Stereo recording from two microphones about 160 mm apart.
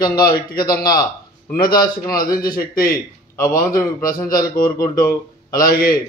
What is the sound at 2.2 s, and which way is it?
A man's voice, 25° left (ahead or behind).